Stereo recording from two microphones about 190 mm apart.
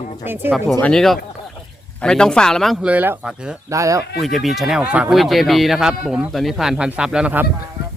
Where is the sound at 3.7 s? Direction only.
15° right (ahead or behind).